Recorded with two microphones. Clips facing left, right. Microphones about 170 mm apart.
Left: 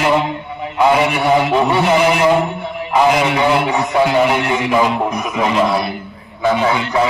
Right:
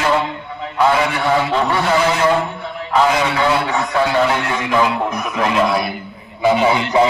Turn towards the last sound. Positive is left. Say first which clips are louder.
# right 2 dB
turn(degrees=-15)  # may be behind; listen again after turning